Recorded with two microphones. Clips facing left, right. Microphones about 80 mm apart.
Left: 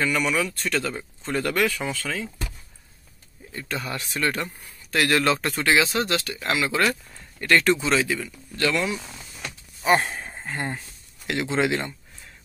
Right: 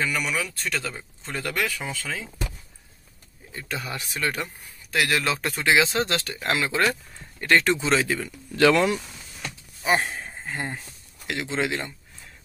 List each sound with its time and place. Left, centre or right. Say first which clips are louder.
0.0 s speech: left 3 dB; centre
1.9 s speech: left 3 dB; centre
3.5 s speech: left 2 dB; centre
5.6 s speech: right 4 dB; centre
8.0 s speech: even; right
8.5 s speech: right 6 dB; right
9.9 s speech: left 2 dB; centre